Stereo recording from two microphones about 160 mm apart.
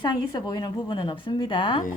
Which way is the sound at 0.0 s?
30° left (ahead or behind).